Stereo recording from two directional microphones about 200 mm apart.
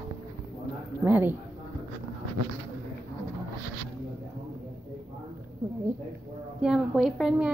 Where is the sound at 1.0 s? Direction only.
10° right (ahead or behind).